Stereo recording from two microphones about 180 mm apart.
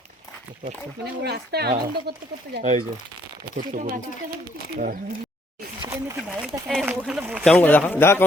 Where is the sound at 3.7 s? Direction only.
50° right (ahead or behind).